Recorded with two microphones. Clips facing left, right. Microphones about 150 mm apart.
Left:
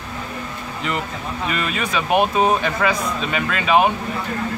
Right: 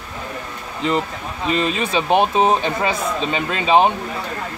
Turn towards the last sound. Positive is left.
turn(degrees=-25)  # may be behind; listen again after turning